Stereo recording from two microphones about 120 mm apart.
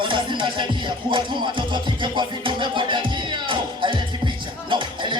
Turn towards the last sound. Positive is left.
turn(degrees=-40)  # may be behind; listen again after turning